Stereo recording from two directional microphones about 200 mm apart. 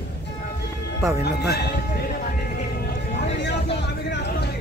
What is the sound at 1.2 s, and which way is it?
Speech, 55° left (ahead or behind).